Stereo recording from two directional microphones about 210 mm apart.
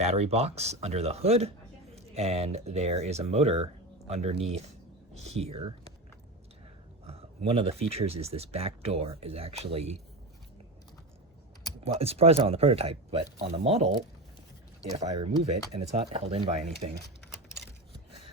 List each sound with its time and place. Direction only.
0.0 s speech: 30° right (ahead or behind)
7.1 s speech: 30° right (ahead or behind)
11.8 s speech: 30° right (ahead or behind)
14.9 s speech: 25° right (ahead or behind)